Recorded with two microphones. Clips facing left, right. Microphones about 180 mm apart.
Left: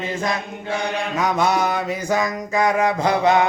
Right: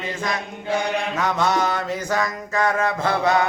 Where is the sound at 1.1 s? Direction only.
10° left (ahead or behind).